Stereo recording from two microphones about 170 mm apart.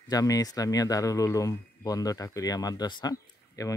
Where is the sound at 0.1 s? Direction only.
20° left (ahead or behind).